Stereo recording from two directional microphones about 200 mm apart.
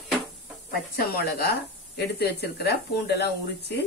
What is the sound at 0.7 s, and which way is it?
A woman's voice, 50° left (ahead or behind).